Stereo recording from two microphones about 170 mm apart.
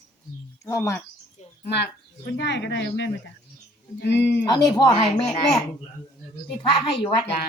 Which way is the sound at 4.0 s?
75° left (ahead or behind).